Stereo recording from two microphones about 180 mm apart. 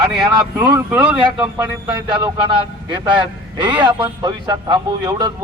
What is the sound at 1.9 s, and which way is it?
A man's voice, 25° right (ahead or behind).